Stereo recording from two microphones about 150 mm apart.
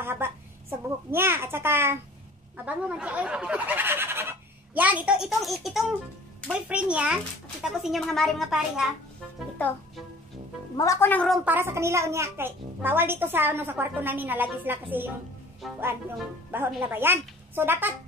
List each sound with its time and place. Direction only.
0.0 s a child's voice: 15° right (ahead or behind)
10.8 s a woman's voice: 20° left (ahead or behind)
11.4 s a woman's voice: 15° right (ahead or behind)
15.6 s a woman's voice: centre (ahead or behind)
16.5 s a woman's voice: 15° right (ahead or behind)